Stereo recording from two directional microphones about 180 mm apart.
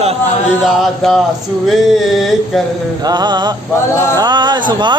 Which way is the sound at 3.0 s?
25° right (ahead or behind).